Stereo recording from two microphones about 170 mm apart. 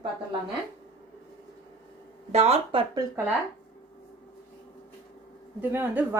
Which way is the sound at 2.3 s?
40° right (ahead or behind).